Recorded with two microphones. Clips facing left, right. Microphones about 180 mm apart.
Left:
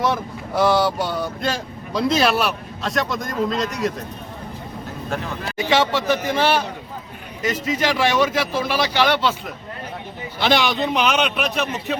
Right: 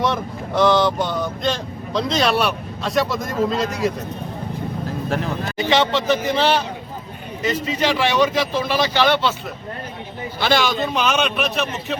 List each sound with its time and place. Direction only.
0.0 s speech: 5° left (ahead or behind)
5.5 s speech: 10° left (ahead or behind)
10.4 s speech: 15° left (ahead or behind)